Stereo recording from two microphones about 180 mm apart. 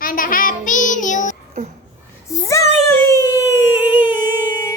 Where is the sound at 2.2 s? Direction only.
15° left (ahead or behind).